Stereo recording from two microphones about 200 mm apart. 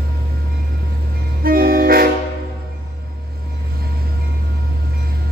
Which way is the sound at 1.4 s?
45° right (ahead or behind).